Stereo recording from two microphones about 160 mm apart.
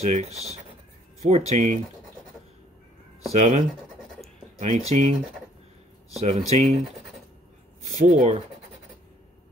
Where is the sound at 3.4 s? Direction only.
50° right (ahead or behind).